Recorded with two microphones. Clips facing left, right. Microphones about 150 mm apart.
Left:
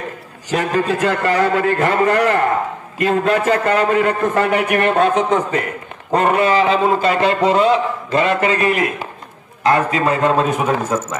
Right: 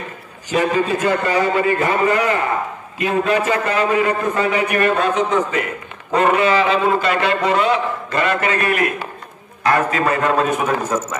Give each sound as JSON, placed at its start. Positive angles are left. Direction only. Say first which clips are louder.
{"t": 0.5, "sound": "a man's voice", "louder": "even", "side_deg": 65}